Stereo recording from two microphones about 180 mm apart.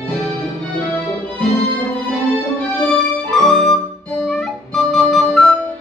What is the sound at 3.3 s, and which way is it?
Music, centre (ahead or behind).